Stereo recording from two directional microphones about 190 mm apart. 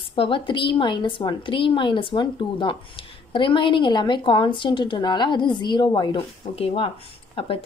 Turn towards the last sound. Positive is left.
turn(degrees=30)  # may be behind; listen again after turning